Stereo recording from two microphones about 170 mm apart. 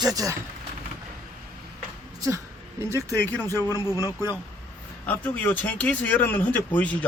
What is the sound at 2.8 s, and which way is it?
Speech, 15° right (ahead or behind).